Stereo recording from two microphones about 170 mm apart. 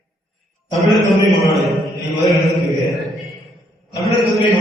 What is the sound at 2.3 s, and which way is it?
Mantra, centre (ahead or behind).